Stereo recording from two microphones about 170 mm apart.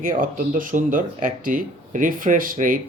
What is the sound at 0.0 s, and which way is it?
Speech, 55° right (ahead or behind).